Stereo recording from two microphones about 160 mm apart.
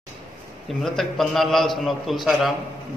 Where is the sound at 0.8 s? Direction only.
Centre (ahead or behind).